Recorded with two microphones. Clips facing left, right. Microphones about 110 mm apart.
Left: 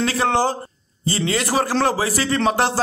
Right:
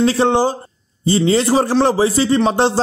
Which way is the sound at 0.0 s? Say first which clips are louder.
Right 5 dB; 25° right (ahead or behind).